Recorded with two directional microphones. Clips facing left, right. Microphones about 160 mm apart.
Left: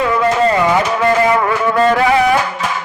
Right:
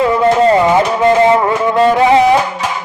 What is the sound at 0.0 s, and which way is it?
Music, 25° right (ahead or behind).